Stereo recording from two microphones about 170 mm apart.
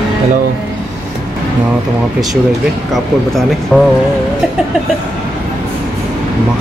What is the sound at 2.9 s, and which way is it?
Speech, centre (ahead or behind).